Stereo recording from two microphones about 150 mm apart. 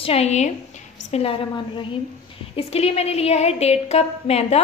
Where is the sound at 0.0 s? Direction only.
40° left (ahead or behind).